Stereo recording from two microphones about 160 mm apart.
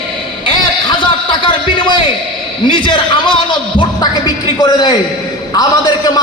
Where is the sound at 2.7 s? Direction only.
30° left (ahead or behind).